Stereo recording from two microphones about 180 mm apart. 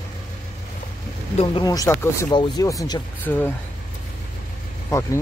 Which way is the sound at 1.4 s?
25° left (ahead or behind).